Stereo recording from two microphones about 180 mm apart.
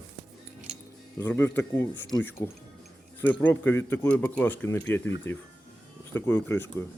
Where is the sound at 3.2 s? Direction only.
10° left (ahead or behind).